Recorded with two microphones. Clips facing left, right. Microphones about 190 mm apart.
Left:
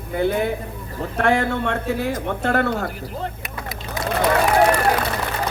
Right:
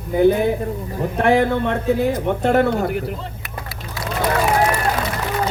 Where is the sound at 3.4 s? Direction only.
20° left (ahead or behind).